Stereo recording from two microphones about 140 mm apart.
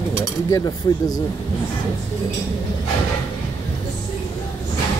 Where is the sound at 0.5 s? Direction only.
25° left (ahead or behind).